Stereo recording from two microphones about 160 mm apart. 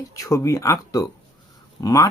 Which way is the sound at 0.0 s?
20° left (ahead or behind).